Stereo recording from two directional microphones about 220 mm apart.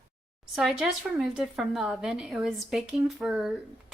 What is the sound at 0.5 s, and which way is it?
A woman's voice, centre (ahead or behind).